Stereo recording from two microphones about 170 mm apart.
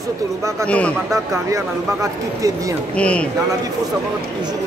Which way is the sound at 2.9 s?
5° left (ahead or behind).